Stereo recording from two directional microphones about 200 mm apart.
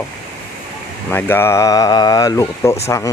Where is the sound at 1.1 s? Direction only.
10° left (ahead or behind).